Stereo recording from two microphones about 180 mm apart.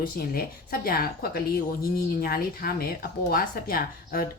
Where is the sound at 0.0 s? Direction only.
55° left (ahead or behind).